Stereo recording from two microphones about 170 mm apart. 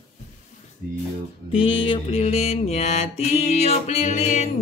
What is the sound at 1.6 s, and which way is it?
Mantra, 30° left (ahead or behind).